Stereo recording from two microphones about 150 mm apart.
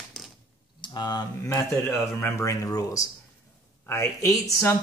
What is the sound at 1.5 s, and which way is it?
Speech, 15° left (ahead or behind).